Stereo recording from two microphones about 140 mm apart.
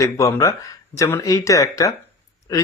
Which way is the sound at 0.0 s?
20° left (ahead or behind).